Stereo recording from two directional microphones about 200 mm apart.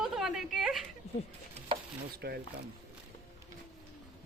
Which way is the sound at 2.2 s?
55° right (ahead or behind).